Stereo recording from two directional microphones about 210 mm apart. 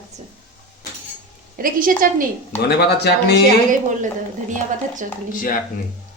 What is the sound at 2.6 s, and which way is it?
Speech, 50° left (ahead or behind).